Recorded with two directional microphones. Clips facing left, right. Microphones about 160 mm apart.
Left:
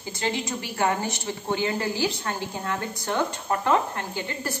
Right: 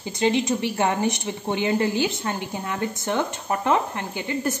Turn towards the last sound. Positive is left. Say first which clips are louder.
# right 5 dB
turn(degrees=-20)  # may be behind; listen again after turning